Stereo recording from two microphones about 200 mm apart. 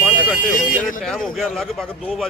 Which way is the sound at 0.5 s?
40° left (ahead or behind).